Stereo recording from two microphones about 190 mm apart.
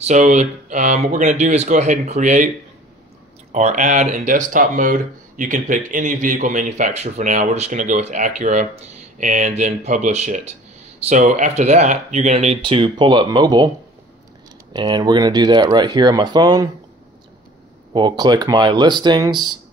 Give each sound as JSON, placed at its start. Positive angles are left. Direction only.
{"t": 0.0, "sound": "speech", "side_deg": -35}
{"t": 3.5, "sound": "speech", "side_deg": -40}
{"t": 14.7, "sound": "speech", "side_deg": -20}
{"t": 17.9, "sound": "speech", "side_deg": -25}